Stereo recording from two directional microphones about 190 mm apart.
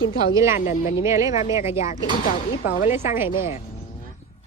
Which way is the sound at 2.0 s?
45° left (ahead or behind).